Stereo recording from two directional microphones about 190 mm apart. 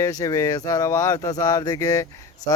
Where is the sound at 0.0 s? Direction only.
15° left (ahead or behind).